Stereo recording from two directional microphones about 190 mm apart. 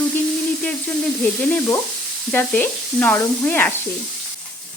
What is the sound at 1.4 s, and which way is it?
Speech, 5° left (ahead or behind).